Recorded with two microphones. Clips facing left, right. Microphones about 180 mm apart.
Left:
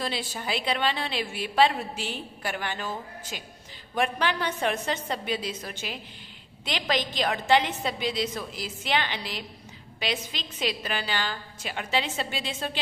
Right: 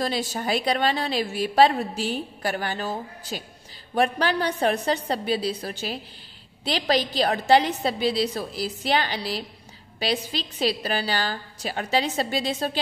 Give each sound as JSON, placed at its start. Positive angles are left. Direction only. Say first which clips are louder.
{"t": 0.0, "sound": "a woman's voice", "louder": "right 5 dB", "side_deg": -40}